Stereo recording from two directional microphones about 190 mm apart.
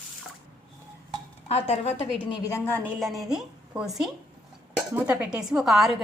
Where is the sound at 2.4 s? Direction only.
15° left (ahead or behind).